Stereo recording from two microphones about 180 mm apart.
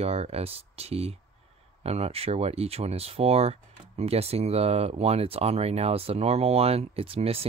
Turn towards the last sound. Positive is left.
turn(degrees=-35)  # may be behind; listen again after turning